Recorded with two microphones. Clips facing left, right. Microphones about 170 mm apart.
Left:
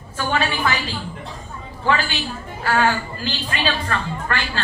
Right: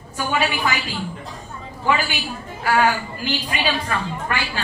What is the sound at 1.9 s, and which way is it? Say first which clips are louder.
A woman's voice: even; 10° right (ahead or behind).